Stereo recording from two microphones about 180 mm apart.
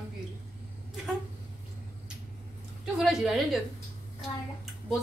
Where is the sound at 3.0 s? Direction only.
Centre (ahead or behind).